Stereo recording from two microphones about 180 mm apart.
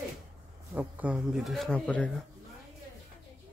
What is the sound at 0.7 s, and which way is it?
Speech, 10° right (ahead or behind).